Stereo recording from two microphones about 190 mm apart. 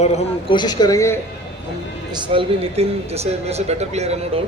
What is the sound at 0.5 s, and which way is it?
Speech, 20° left (ahead or behind).